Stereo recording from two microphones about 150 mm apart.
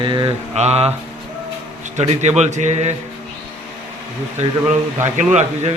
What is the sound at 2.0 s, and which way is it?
Speech, 50° right (ahead or behind).